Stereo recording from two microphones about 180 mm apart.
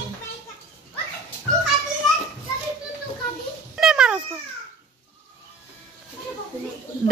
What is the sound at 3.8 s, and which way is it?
Cat, 5° right (ahead or behind).